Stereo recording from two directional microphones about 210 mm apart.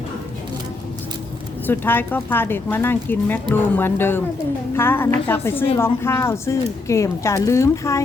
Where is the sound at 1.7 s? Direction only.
10° left (ahead or behind).